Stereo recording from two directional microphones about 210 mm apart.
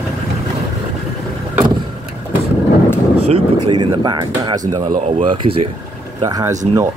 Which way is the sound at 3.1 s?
30° right (ahead or behind).